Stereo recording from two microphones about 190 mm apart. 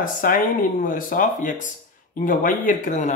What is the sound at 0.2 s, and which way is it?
Speech, 45° left (ahead or behind).